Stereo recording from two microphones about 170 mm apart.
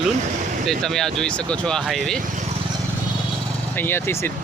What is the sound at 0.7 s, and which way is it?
Speech, 5° left (ahead or behind).